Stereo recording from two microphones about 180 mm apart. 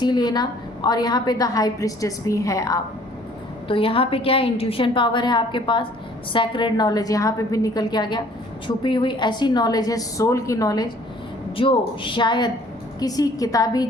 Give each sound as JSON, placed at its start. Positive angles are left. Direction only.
{"t": 0.0, "sound": "a woman's voice", "side_deg": 25}
{"t": 3.7, "sound": "a woman's voice", "side_deg": 30}